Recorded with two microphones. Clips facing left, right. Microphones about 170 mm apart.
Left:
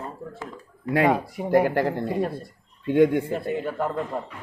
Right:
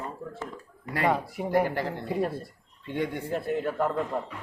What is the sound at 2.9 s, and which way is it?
Speech, 50° left (ahead or behind).